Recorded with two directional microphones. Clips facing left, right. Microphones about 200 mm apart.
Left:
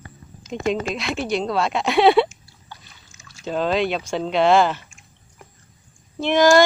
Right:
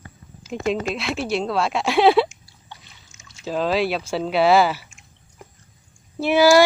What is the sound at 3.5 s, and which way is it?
A woman's voice, centre (ahead or behind).